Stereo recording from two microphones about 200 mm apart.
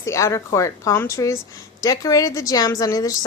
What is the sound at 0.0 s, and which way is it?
A woman's voice, 15° left (ahead or behind).